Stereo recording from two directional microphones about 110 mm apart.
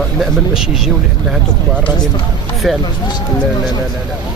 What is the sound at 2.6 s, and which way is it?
Speech, centre (ahead or behind).